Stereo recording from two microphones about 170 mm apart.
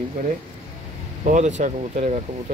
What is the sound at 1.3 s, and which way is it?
Speech, 45° right (ahead or behind).